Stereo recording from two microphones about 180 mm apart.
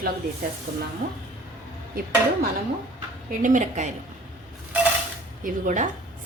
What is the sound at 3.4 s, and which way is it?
Speech, 45° right (ahead or behind).